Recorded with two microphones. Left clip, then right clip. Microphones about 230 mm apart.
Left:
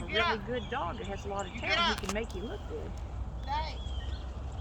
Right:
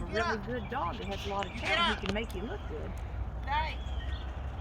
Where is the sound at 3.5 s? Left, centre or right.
Centre.